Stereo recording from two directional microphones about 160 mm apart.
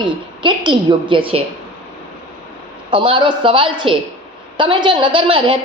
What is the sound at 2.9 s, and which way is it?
A woman's voice, 30° right (ahead or behind).